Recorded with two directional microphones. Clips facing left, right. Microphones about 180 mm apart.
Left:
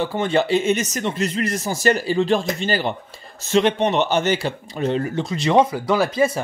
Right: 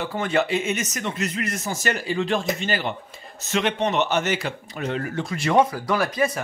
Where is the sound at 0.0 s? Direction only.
30° left (ahead or behind).